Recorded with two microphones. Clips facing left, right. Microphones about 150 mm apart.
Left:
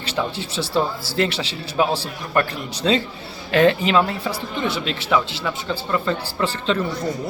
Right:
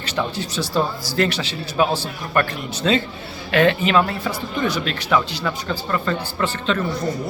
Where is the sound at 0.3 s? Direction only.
30° left (ahead or behind).